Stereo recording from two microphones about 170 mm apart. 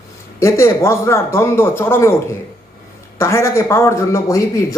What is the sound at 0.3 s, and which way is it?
Speech, 15° left (ahead or behind).